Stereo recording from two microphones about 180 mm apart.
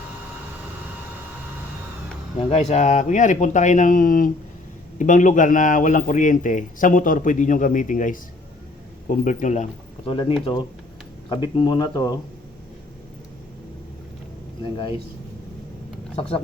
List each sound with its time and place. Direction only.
2.4 s speech: 35° left (ahead or behind)
10.1 s speech: 30° left (ahead or behind)
16.1 s speech: 30° left (ahead or behind)